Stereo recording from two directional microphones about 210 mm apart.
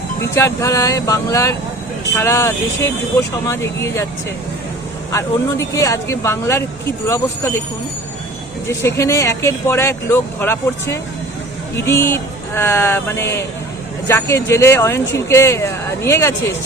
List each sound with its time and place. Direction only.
0.3 s speech: 15° left (ahead or behind)
5.1 s speech: 15° left (ahead or behind)
8.6 s speech: 15° left (ahead or behind)